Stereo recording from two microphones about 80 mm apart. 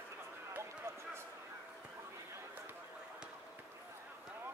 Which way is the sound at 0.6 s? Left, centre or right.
Right.